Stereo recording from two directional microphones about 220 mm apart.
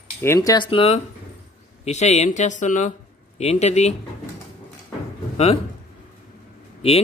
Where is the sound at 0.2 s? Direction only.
15° left (ahead or behind).